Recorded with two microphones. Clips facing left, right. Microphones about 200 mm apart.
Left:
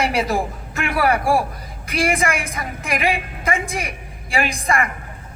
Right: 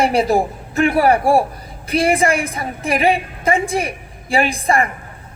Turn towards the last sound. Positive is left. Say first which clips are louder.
# right 4 dB
turn(degrees=-35)  # may be behind; listen again after turning